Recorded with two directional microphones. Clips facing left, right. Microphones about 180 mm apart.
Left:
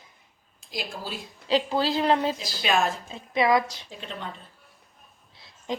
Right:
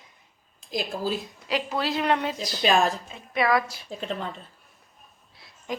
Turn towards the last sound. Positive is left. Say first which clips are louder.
# left 2 dB
turn(degrees=25)  # may be behind; listen again after turning